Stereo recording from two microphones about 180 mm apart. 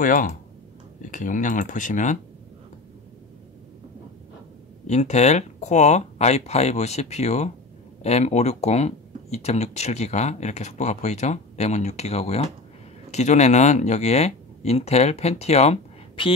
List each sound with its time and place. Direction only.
0.0 s speech: 50° left (ahead or behind)
4.8 s speech: 40° left (ahead or behind)